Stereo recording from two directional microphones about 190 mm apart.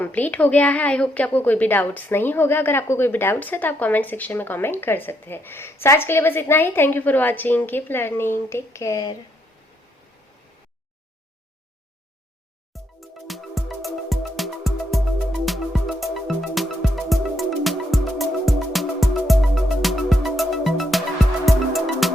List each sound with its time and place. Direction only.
0.0 s a woman's voice: 10° left (ahead or behind)
12.7 s music: centre (ahead or behind)